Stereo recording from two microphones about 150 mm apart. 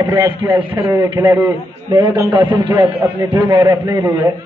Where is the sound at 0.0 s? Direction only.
20° right (ahead or behind).